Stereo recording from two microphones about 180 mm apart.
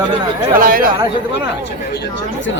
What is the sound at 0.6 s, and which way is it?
Speech, 50° right (ahead or behind).